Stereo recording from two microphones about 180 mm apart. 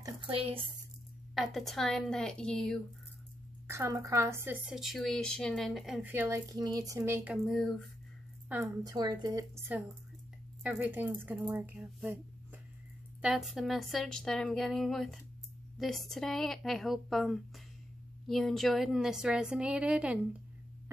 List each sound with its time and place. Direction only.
0.0 s a sound: 30° right (ahead or behind)
1.3 s a woman's voice: centre (ahead or behind)
3.6 s a woman's voice: 15° right (ahead or behind)
7.4 s a woman's voice: centre (ahead or behind)
8.5 s a woman's voice: 15° right (ahead or behind)
10.6 s a woman's voice: 10° right (ahead or behind)
13.2 s a woman's voice: centre (ahead or behind)